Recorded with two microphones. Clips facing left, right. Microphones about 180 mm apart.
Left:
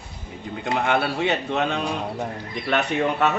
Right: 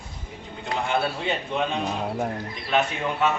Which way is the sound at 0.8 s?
75° left (ahead or behind).